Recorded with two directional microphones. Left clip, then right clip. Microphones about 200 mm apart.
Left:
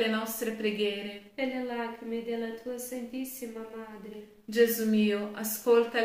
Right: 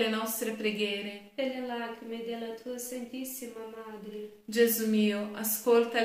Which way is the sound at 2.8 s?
25° left (ahead or behind).